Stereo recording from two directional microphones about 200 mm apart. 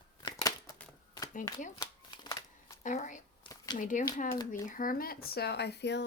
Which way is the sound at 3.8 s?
40° left (ahead or behind).